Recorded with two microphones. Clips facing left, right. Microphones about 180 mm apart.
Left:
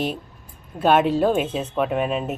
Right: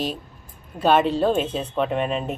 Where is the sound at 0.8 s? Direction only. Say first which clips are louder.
Left 1 dB; 10° left (ahead or behind).